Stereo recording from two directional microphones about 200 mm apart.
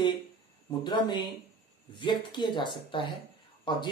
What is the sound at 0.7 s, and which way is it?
Speech, 20° left (ahead or behind).